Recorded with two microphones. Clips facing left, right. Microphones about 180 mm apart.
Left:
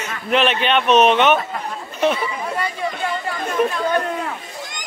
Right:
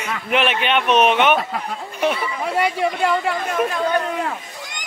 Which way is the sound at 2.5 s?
80° right.